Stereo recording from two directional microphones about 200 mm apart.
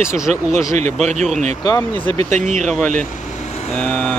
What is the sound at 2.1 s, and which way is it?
Speech, 35° right (ahead or behind).